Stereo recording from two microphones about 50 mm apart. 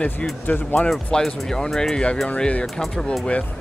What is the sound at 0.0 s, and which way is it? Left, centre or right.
Speech, left.